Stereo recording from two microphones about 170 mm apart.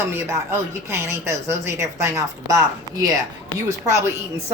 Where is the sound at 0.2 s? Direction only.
15° right (ahead or behind).